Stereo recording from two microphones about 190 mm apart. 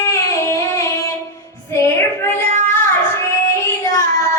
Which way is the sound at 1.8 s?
10° left (ahead or behind).